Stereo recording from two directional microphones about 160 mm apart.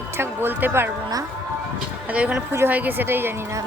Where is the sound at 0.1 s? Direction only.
15° right (ahead or behind).